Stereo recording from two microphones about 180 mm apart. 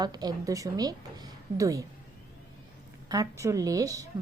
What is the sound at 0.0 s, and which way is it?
A woman's voice, 20° right (ahead or behind).